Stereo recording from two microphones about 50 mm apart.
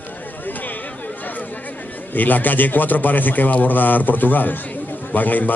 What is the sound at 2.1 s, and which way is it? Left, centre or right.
A man's voice, left.